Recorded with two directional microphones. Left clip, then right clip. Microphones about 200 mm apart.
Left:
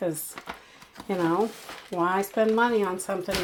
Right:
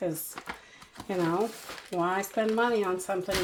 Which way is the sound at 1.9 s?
40° left (ahead or behind).